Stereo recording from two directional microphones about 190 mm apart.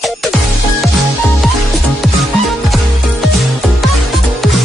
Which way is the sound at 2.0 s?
Centre (ahead or behind).